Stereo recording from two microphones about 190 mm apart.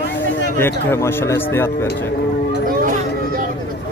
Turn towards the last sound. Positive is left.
turn(degrees=-45)  # may be behind; listen again after turning